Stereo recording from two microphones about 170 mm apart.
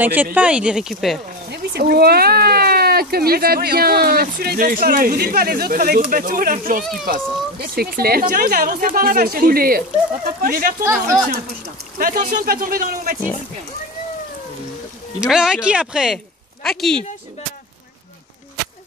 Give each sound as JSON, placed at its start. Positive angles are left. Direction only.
{"t": 0.0, "sound": "speech", "side_deg": -10}
{"t": 1.5, "sound": "speech", "side_deg": -70}
{"t": 6.8, "sound": "speech", "side_deg": 0}
{"t": 7.6, "sound": "speech", "side_deg": -60}
{"t": 15.1, "sound": "speech", "side_deg": -5}